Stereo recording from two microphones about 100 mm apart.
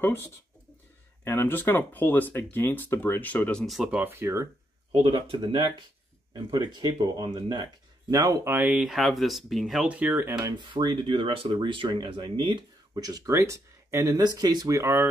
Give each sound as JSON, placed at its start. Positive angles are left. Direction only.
{"t": 0.0, "sound": "speech", "side_deg": 20}
{"t": 3.6, "sound": "speech", "side_deg": 0}
{"t": 3.9, "sound": "speech", "side_deg": -20}
{"t": 4.9, "sound": "speech", "side_deg": -70}
{"t": 5.3, "sound": "speech", "side_deg": -50}
{"t": 8.5, "sound": "speech", "side_deg": -15}
{"t": 8.8, "sound": "speech", "side_deg": 0}
{"t": 9.8, "sound": "speech", "side_deg": -15}
{"t": 10.4, "sound": "speech", "side_deg": -50}
{"t": 14.8, "sound": "speech", "side_deg": -25}